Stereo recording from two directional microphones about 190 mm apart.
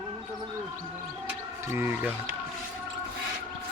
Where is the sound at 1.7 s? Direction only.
10° right (ahead or behind).